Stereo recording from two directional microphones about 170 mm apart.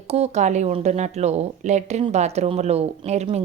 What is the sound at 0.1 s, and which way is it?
Speech, 40° right (ahead or behind).